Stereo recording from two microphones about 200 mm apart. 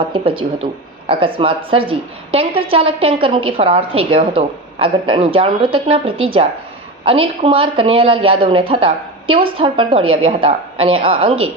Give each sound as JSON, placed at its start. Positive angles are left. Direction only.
{"t": 0.1, "sound": "speech", "side_deg": -25}